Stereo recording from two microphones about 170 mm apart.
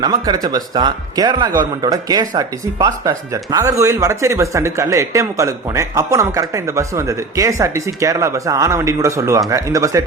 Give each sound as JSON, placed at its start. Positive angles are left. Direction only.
{"t": 0.0, "sound": "speech", "side_deg": -25}